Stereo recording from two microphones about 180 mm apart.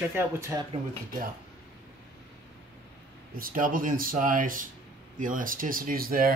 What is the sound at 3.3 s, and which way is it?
Speech, 50° right (ahead or behind).